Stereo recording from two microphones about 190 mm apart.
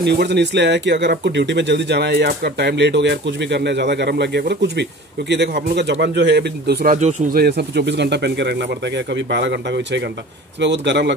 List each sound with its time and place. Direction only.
0.0 s speech: 60° right (ahead or behind)